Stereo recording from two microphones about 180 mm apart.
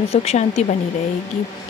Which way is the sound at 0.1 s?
35° left (ahead or behind).